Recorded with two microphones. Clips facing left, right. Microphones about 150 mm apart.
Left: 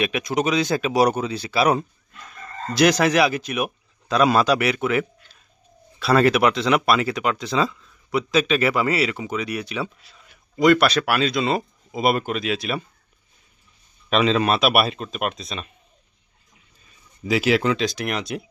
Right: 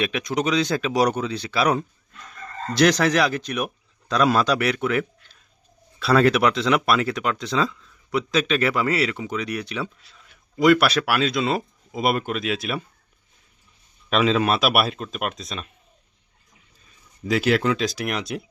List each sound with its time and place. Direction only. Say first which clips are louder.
0.0 s speech: left 1 dB; 5° left (ahead or behind)
14.1 s speech: left 1 dB; centre (ahead or behind)
17.2 s speech: left 1 dB; 5° left (ahead or behind)